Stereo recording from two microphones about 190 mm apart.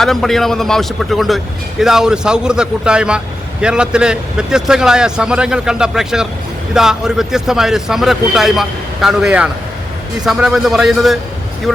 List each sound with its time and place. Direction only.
0.0 s a man's voice: centre (ahead or behind)